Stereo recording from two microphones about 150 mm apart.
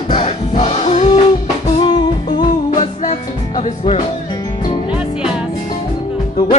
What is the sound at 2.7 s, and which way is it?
Music, 45° left (ahead or behind).